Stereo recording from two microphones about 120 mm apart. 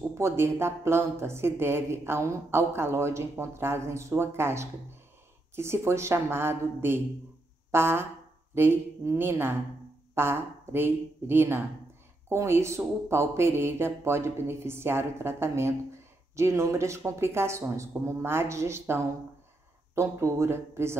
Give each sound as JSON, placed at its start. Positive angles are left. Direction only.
{"t": 0.1, "sound": "speech", "side_deg": -20}